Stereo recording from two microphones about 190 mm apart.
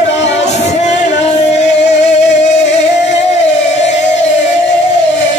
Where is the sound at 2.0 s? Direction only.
35° left (ahead or behind).